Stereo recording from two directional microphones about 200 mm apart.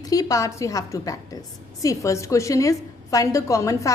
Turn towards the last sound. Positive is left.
turn(degrees=15)  # may be behind; listen again after turning